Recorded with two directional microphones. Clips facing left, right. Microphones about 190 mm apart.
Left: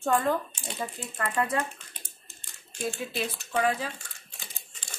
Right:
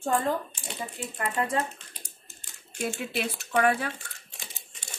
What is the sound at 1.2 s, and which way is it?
Speech, 25° right (ahead or behind).